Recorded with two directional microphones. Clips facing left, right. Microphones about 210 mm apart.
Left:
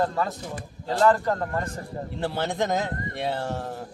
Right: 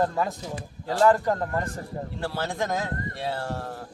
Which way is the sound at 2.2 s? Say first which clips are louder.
Left 3 dB; 20° left (ahead or behind).